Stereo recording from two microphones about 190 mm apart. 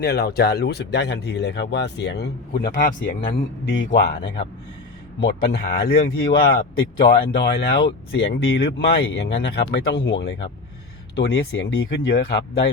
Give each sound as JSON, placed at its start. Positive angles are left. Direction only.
{"t": 0.0, "sound": "speech", "side_deg": 55}
{"t": 5.5, "sound": "speech", "side_deg": 55}